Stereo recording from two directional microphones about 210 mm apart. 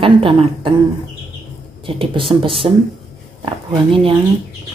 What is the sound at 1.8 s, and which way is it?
Speech, 25° right (ahead or behind).